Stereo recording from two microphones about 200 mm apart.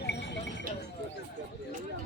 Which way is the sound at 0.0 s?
60° left (ahead or behind).